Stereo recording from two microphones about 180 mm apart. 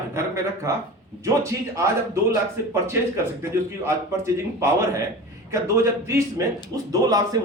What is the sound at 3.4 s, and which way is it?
A man's voice, 15° right (ahead or behind).